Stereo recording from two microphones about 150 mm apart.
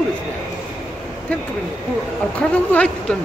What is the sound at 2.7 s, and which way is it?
Speech, 10° left (ahead or behind).